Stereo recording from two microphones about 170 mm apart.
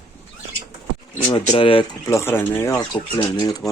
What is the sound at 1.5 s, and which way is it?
Speech, 30° left (ahead or behind).